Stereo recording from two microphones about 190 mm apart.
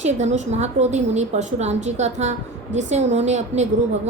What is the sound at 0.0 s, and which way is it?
A woman's voice, 35° right (ahead or behind).